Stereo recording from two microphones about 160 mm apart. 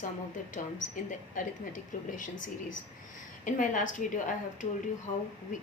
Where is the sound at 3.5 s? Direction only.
55° left (ahead or behind).